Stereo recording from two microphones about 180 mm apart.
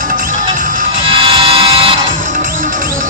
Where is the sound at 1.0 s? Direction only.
30° right (ahead or behind).